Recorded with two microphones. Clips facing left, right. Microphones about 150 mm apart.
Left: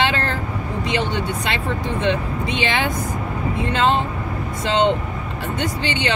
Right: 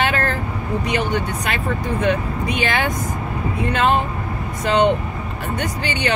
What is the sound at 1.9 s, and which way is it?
Speech, 25° left (ahead or behind).